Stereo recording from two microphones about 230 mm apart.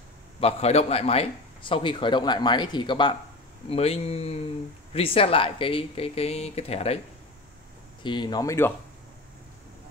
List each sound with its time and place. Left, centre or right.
0.4 s a man's voice: left
8.0 s speech: centre